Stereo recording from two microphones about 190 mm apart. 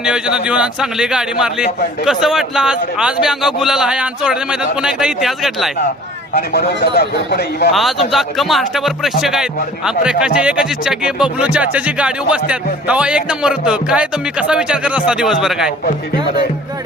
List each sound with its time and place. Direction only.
0.0 s speech: 5° right (ahead or behind)
6.3 s speech: 55° left (ahead or behind)
7.7 s speech: centre (ahead or behind)